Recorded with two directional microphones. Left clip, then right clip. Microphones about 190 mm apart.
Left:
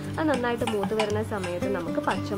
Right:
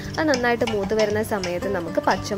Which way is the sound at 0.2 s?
30° right (ahead or behind).